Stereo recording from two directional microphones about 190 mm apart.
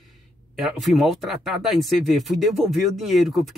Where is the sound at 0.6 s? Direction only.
Centre (ahead or behind).